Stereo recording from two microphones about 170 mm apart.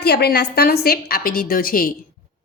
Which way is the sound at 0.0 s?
70° left (ahead or behind).